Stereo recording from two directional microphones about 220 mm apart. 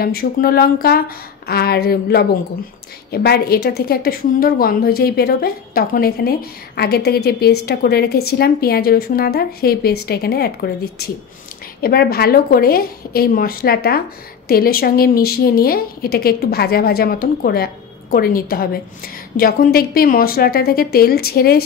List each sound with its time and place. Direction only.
0.0 s a woman's voice: 45° left (ahead or behind)